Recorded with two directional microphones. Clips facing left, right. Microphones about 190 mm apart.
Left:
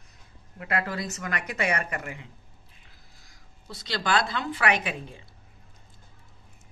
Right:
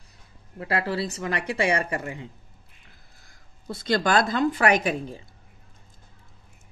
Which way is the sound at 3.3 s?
50° right (ahead or behind).